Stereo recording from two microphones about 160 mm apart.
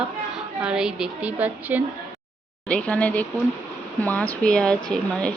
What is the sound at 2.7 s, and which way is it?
Speech, 10° left (ahead or behind).